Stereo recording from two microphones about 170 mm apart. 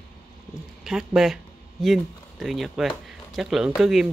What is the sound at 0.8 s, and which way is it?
A woman's voice, centre (ahead or behind).